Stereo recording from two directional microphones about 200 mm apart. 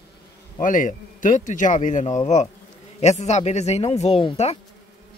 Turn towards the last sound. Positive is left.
turn(degrees=30)  # may be behind; listen again after turning